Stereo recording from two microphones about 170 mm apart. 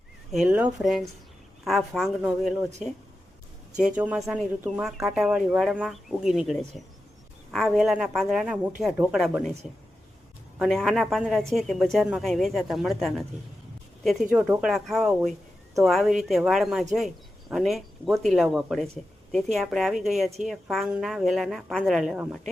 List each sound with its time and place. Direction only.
0.3 s speech: 5° right (ahead or behind)
3.8 s speech: 5° right (ahead or behind)
10.6 s speech: centre (ahead or behind)